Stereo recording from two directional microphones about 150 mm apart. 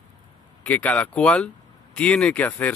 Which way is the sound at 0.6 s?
10° left (ahead or behind).